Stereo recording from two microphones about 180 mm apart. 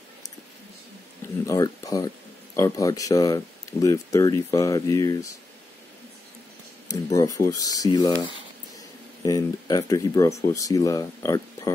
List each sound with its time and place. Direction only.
1.4 s speech: 20° left (ahead or behind)
6.9 s speech: 20° left (ahead or behind)
9.2 s speech: 20° left (ahead or behind)